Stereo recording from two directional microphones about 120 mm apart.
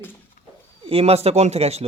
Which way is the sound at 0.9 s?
60° right (ahead or behind).